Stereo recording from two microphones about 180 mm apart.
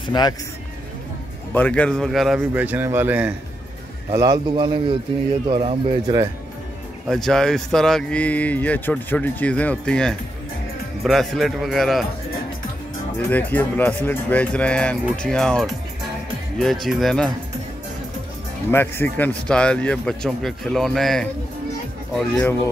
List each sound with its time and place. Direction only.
0.0 s speech: 25° left (ahead or behind)
1.5 s a man's voice: 10° left (ahead or behind); by 6.2 s 30° right (ahead or behind)
7.1 s speech: centre (ahead or behind)
13.3 s speech: 10° left (ahead or behind)
18.7 s speech: 10° left (ahead or behind)